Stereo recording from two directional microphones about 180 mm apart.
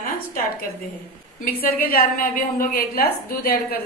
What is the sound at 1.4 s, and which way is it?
A woman's voice, 50° left (ahead or behind).